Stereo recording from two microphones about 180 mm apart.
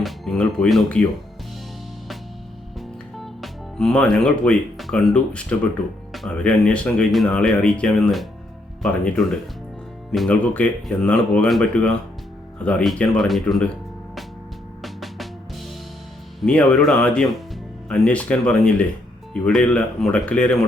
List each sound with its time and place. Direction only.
0.0 s speech: centre (ahead or behind)
2.7 s music: centre (ahead or behind)
6.1 s speech: 5° left (ahead or behind)
10.1 s speech: 5° left (ahead or behind)
14.8 s music: centre (ahead or behind)
16.4 s speech: 5° left (ahead or behind)